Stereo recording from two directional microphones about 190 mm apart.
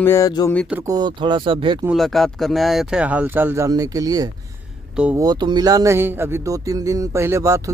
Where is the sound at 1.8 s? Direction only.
Centre (ahead or behind).